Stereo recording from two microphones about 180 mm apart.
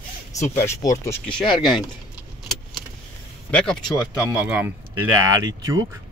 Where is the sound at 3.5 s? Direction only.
5° left (ahead or behind).